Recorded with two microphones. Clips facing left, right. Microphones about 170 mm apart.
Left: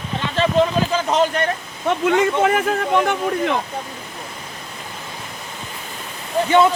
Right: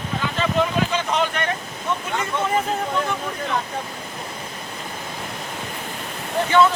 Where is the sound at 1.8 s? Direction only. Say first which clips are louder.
Left 9 dB; 90° left.